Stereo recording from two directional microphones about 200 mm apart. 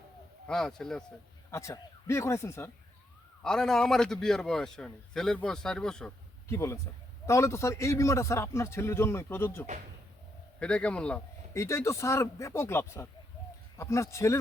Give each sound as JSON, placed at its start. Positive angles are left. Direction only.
{"t": 0.4, "sound": "a man's voice", "side_deg": 5}
{"t": 1.5, "sound": "a man's voice", "side_deg": 15}
{"t": 3.4, "sound": "a man's voice", "side_deg": 5}